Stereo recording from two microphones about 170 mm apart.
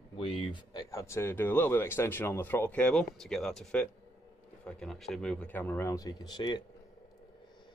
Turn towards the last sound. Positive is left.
turn(degrees=25)  # may be behind; listen again after turning